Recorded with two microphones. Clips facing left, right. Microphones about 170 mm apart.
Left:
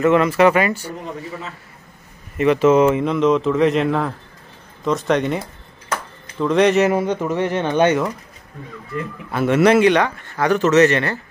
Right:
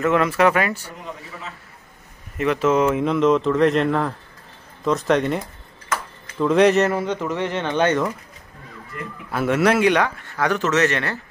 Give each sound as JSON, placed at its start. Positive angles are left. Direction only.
{"t": 0.0, "sound": "speech", "side_deg": 0}
{"t": 2.3, "sound": "speech", "side_deg": 0}
{"t": 6.4, "sound": "speech", "side_deg": 0}
{"t": 6.9, "sound": "speech", "side_deg": 15}
{"t": 9.3, "sound": "speech", "side_deg": -5}